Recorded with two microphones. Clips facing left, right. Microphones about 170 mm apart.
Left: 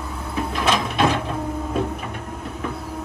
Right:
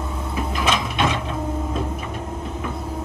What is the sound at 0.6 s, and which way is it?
Printer, centre (ahead or behind).